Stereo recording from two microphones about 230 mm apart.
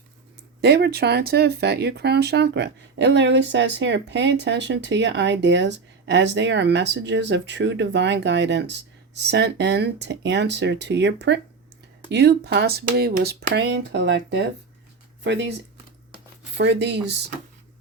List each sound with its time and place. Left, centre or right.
0.6 s speech: right
16.6 s speech: right